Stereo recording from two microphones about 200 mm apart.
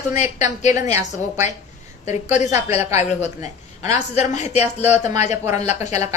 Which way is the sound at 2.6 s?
30° left (ahead or behind).